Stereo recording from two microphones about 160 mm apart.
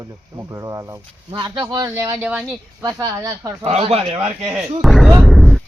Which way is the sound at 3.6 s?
40° right (ahead or behind).